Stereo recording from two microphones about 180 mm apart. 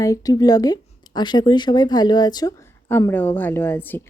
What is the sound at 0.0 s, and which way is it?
Speech, 20° left (ahead or behind).